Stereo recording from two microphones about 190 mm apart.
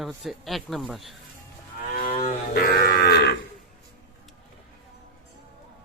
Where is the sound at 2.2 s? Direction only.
50° left (ahead or behind).